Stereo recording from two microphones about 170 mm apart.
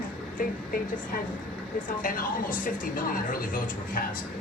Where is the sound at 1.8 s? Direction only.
50° left (ahead or behind).